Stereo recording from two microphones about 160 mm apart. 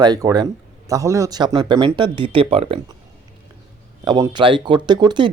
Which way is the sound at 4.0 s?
25° right (ahead or behind).